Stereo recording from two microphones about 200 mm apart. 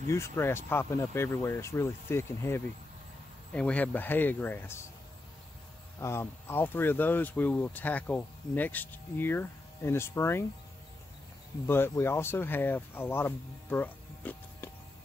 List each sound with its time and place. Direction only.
0.1 s speech: 15° left (ahead or behind)
5.9 s speech: 15° left (ahead or behind)
11.6 s speech: 10° left (ahead or behind)